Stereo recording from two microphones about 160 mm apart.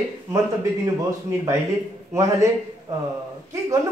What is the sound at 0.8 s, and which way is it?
Speech, 20° right (ahead or behind).